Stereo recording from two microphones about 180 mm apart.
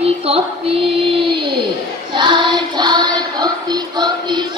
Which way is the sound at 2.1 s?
25° right (ahead or behind).